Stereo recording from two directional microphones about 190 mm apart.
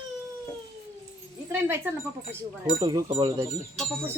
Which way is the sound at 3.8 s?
5° left (ahead or behind).